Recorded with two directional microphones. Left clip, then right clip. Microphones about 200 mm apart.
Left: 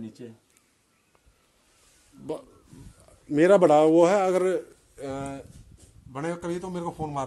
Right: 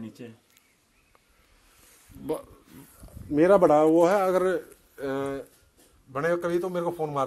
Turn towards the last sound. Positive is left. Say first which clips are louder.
# right 4 dB
turn(degrees=-10)  # may be behind; listen again after turning